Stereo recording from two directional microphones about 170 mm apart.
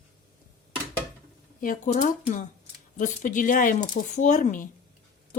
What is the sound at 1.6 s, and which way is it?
Speech, 50° left (ahead or behind).